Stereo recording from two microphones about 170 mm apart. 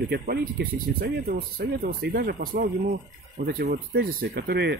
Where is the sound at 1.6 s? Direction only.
55° right (ahead or behind).